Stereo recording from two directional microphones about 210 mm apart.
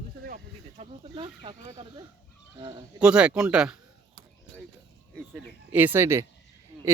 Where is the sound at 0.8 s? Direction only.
25° right (ahead or behind).